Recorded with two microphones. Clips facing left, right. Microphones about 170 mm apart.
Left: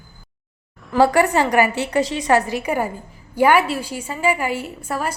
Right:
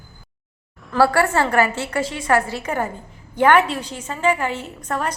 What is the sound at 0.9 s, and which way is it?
A woman's voice, 15° left (ahead or behind).